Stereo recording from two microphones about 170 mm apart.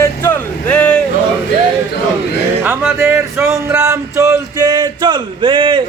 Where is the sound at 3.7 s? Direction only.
20° right (ahead or behind).